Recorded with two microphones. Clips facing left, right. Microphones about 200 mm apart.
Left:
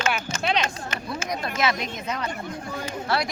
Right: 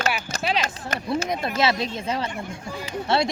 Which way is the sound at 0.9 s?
35° right (ahead or behind).